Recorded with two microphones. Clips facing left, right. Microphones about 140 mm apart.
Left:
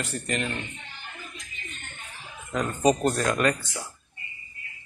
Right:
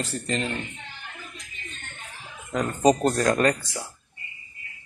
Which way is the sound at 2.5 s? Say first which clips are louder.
Right 2 dB; 35° right (ahead or behind).